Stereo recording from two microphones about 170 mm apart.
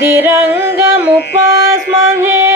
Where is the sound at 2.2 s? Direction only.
15° right (ahead or behind).